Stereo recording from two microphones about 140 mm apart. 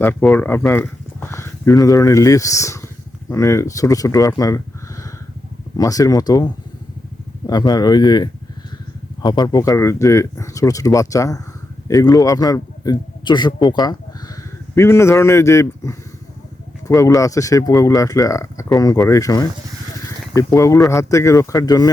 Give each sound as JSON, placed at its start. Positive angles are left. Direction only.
{"t": 0.0, "sound": "speech", "side_deg": 15}
{"t": 14.8, "sound": "speech", "side_deg": 20}